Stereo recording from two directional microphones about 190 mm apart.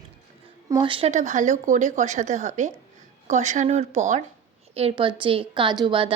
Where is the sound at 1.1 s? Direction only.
40° right (ahead or behind).